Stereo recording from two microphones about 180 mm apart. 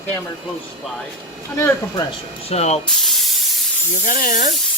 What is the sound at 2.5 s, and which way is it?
Speech, 35° left (ahead or behind).